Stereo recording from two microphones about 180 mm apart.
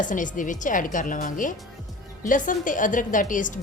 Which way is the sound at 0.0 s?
45° left (ahead or behind).